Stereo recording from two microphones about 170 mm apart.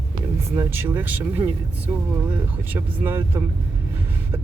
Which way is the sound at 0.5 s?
15° right (ahead or behind).